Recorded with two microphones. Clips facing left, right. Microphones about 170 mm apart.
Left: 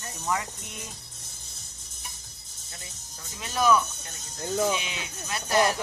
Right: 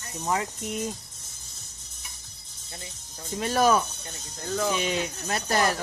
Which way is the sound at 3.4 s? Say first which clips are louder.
Right 1 dB; 45° right (ahead or behind).